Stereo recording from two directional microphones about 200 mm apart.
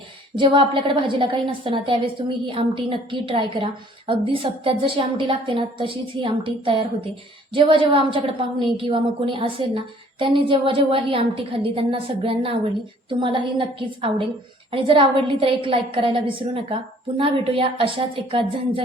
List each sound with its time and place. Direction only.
0.3 s a woman's voice: 25° right (ahead or behind)